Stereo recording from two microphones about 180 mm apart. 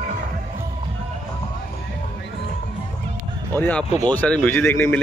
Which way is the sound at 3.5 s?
10° left (ahead or behind).